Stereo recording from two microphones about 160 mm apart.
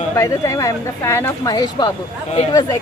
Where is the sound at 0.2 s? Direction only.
20° left (ahead or behind).